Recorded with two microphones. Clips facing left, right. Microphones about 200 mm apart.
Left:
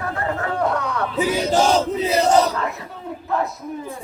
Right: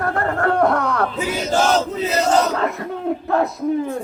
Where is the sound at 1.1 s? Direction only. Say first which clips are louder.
Left 2 dB; 15° left (ahead or behind).